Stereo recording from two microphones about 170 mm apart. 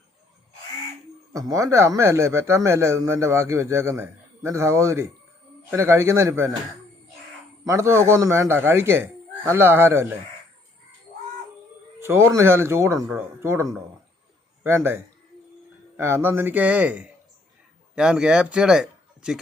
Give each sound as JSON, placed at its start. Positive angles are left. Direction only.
{"t": 1.3, "sound": "speech", "side_deg": -20}
{"t": 7.6, "sound": "speech", "side_deg": -15}
{"t": 11.9, "sound": "a man's voice", "side_deg": -15}
{"t": 16.0, "sound": "speech", "side_deg": -15}